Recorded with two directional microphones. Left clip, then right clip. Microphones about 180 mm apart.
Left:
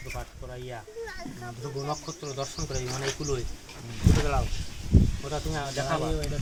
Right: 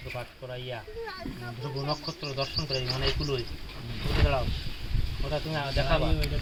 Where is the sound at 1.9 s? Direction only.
25° right (ahead or behind).